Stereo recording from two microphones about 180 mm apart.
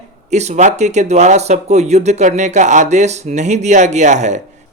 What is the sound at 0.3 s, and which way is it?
Speech, 40° right (ahead or behind).